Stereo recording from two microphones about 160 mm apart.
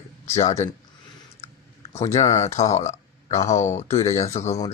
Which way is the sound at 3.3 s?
20° left (ahead or behind).